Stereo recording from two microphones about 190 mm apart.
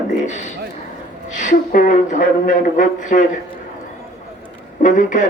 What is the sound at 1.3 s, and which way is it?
Speech, 40° left (ahead or behind).